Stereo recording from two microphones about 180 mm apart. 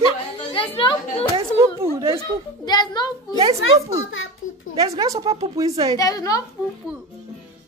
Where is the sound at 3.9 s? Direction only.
90° left.